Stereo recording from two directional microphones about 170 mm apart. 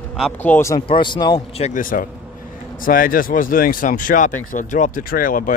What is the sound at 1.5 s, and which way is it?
Speech, 40° left (ahead or behind).